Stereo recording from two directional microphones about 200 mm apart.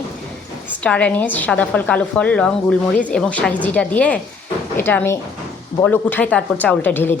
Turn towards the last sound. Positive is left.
turn(degrees=10)  # may be behind; listen again after turning